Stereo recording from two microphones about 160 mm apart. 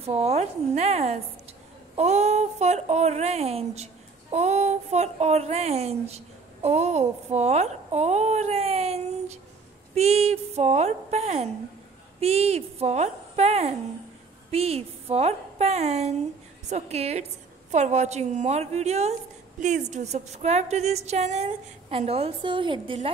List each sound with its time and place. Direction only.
0.0 s a woman's voice: 40° right (ahead or behind)